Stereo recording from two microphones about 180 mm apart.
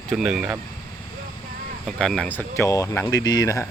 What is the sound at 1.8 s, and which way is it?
Speech, 5° left (ahead or behind).